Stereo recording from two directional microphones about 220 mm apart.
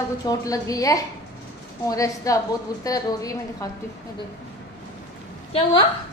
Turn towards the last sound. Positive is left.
turn(degrees=20)  # may be behind; listen again after turning